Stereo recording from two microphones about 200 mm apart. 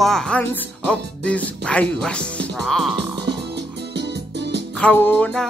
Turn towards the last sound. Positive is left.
turn(degrees=5)  # may be behind; listen again after turning